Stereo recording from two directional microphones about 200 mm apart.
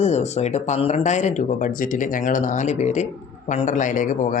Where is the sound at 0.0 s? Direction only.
35° left (ahead or behind).